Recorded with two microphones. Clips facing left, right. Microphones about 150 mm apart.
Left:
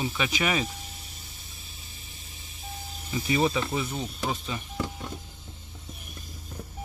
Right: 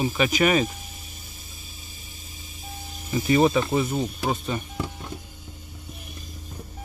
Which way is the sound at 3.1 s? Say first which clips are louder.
Right 6 dB; 50° right (ahead or behind).